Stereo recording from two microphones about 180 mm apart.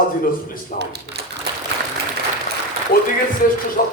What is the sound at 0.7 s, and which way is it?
Speech, 70° right (ahead or behind).